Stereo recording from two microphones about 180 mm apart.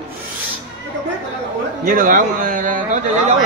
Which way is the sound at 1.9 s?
50° right (ahead or behind).